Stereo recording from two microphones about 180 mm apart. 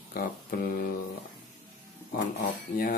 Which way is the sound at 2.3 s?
55° left (ahead or behind).